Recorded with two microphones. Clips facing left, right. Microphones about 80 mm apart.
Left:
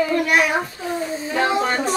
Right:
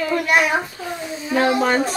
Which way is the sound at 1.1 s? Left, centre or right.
Left.